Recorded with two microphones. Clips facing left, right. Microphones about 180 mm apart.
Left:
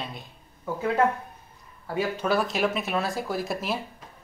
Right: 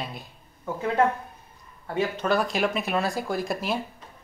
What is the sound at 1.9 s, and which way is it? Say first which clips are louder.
Speech: right 1 dB; 5° left (ahead or behind).